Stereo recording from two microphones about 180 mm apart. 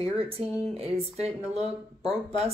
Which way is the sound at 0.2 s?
30° right (ahead or behind).